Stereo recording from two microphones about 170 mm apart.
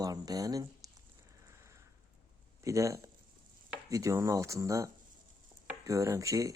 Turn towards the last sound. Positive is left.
turn(degrees=-20)  # may be behind; listen again after turning